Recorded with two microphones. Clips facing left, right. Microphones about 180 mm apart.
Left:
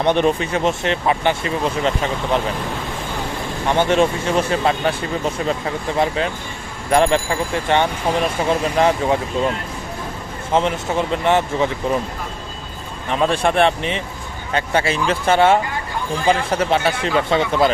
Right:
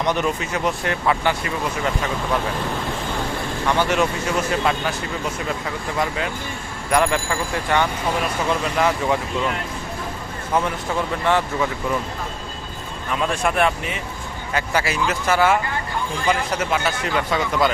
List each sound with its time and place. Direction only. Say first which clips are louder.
0.1 s speech: left 8 dB; 30° left (ahead or behind)
3.7 s speech: left 4 dB; 25° left (ahead or behind)
6.0 s speech: left 4 dB; 25° left (ahead or behind)
13.1 s speech: left 4 dB; 30° left (ahead or behind)